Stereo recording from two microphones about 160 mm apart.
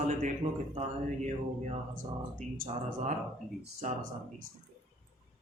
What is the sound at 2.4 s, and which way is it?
Speech, centre (ahead or behind).